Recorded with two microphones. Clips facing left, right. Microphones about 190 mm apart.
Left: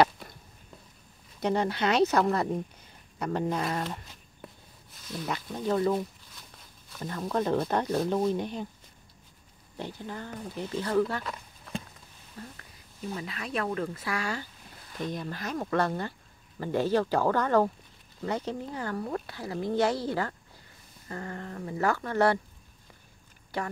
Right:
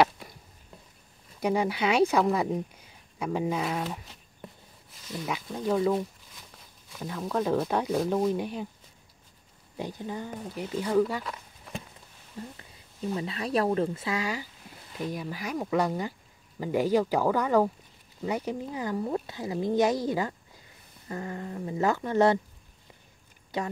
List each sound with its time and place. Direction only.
1.4 s speech: 10° right (ahead or behind)
9.8 s speech: 15° right (ahead or behind)
12.4 s speech: 20° right (ahead or behind)
13.1 s speech: 30° right (ahead or behind)
13.8 s speech: 20° right (ahead or behind)
23.5 s speech: 20° right (ahead or behind)